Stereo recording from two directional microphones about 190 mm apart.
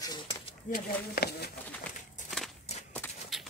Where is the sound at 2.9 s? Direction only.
5° left (ahead or behind).